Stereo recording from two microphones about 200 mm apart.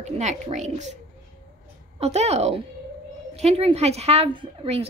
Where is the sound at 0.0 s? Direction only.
35° right (ahead or behind).